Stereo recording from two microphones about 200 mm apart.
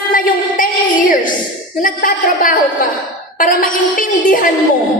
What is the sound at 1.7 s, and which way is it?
A man's voice, 45° left (ahead or behind).